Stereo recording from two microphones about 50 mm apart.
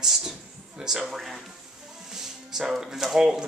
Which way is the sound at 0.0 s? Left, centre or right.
Centre.